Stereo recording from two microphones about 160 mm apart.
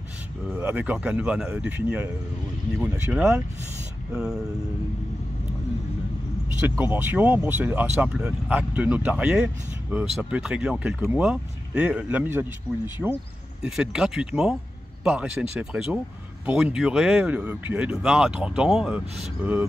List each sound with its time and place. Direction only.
0.5 s speech: 10° right (ahead or behind)
6.8 s speech: 15° right (ahead or behind)